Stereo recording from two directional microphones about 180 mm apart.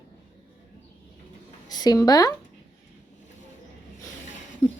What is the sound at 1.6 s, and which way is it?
Speech, 20° left (ahead or behind).